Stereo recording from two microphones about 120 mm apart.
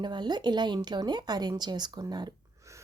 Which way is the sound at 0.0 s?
40° right (ahead or behind).